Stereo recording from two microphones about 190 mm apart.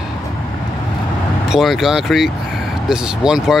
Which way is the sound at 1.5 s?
Centre (ahead or behind).